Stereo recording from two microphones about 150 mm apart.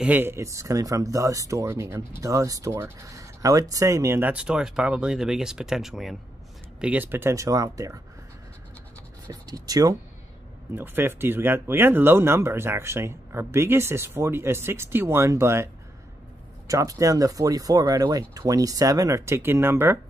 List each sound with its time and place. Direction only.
0.0 s speech: 15° right (ahead or behind)
9.3 s speech: 25° right (ahead or behind)
10.7 s speech: 15° right (ahead or behind)